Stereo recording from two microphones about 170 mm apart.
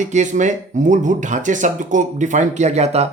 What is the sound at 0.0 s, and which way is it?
Speech, 45° right (ahead or behind).